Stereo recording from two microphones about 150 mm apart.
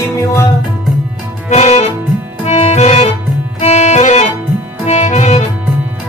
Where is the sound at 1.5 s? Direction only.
50° left (ahead or behind).